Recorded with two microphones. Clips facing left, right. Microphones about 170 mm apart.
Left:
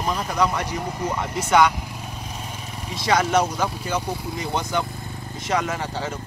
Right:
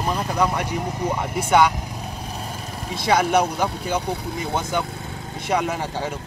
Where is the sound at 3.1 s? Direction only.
10° right (ahead or behind).